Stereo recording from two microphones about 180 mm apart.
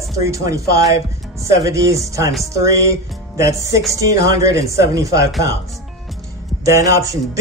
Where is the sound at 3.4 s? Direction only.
15° right (ahead or behind).